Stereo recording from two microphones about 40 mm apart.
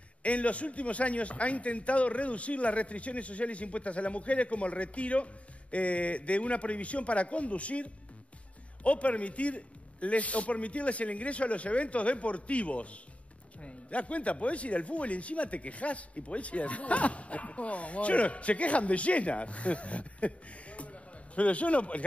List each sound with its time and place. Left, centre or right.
0.2 s speech: left